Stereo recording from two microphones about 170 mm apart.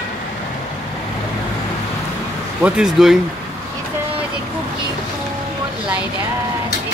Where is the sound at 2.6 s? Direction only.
5° right (ahead or behind).